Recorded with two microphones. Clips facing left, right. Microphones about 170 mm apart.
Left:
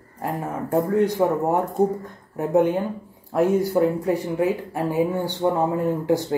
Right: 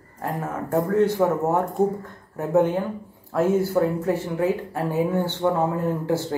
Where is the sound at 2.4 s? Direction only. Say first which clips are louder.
Left 1 dB; 15° left (ahead or behind).